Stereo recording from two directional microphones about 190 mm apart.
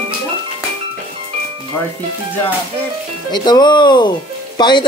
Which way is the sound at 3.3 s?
20° left (ahead or behind).